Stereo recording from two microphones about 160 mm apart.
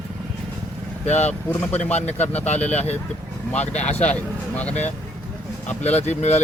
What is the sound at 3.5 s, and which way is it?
Speech, 45° left (ahead or behind).